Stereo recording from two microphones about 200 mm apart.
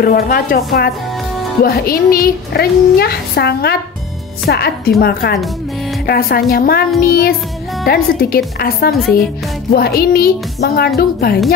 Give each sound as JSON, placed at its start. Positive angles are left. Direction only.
{"t": 0.0, "sound": "speech", "side_deg": 50}